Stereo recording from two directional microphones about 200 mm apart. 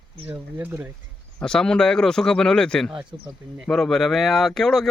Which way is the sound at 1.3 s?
5° left (ahead or behind).